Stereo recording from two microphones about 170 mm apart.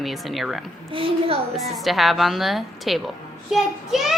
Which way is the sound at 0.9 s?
35° right (ahead or behind).